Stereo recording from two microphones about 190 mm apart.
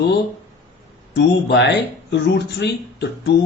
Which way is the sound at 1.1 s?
65° left (ahead or behind).